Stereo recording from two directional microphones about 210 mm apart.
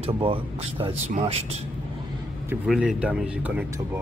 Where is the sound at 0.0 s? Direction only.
25° right (ahead or behind).